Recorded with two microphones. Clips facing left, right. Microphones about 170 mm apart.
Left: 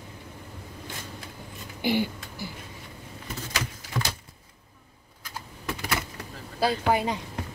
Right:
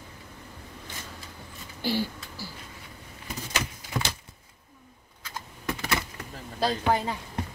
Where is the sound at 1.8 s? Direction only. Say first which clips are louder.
Left 3 dB; 20° left (ahead or behind).